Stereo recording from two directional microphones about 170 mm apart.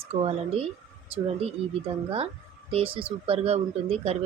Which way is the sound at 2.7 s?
30° right (ahead or behind).